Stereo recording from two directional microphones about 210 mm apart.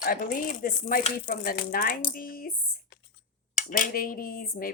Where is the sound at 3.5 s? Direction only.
40° left (ahead or behind).